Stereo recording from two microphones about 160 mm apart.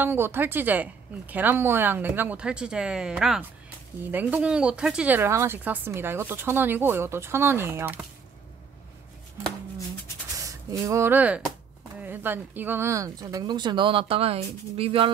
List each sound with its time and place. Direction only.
0.0 s speech: 15° right (ahead or behind)
10.4 s speech: 20° right (ahead or behind)